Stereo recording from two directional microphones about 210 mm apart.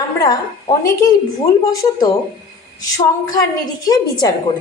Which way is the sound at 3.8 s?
20° left (ahead or behind).